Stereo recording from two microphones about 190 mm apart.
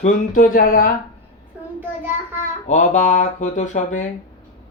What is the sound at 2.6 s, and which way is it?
Speech, 40° left (ahead or behind).